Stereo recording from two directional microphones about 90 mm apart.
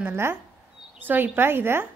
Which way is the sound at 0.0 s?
25° right (ahead or behind).